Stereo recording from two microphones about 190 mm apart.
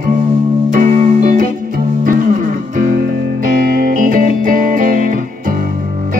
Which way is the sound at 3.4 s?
45° right (ahead or behind).